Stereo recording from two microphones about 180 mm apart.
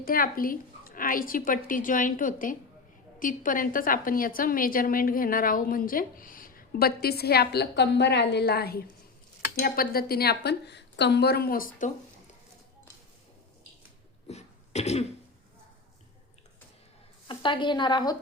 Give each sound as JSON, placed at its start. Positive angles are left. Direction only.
{"t": 0.0, "sound": "a woman's voice", "side_deg": 50}
{"t": 14.3, "sound": "cough", "side_deg": 35}
{"t": 17.2, "sound": "a woman's voice", "side_deg": 25}